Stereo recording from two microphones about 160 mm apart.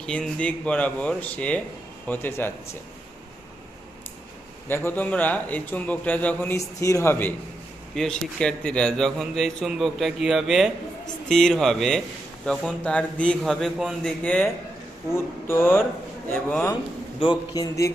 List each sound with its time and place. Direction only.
0.0 s a man's voice: 5° left (ahead or behind)
4.7 s a man's voice: 15° left (ahead or behind)
17.2 s speech: 30° left (ahead or behind)